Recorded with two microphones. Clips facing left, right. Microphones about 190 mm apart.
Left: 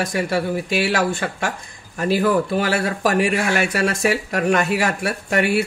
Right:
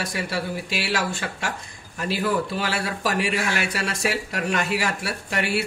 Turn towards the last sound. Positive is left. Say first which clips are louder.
# left 7 dB
turn(degrees=50)  # may be behind; listen again after turning